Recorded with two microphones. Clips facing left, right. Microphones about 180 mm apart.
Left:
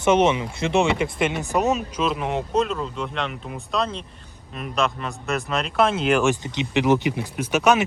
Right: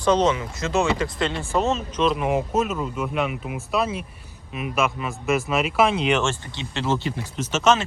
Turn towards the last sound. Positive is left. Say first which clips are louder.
# left 1 dB
turn(degrees=15)  # may be behind; listen again after turning